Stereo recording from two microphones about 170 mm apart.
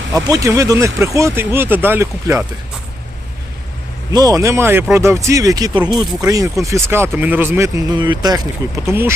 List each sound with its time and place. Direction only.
0.3 s speech: 20° right (ahead or behind)
4.1 s speech: 20° right (ahead or behind)